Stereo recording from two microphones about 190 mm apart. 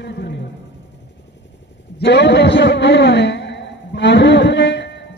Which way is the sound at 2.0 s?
65° left (ahead or behind).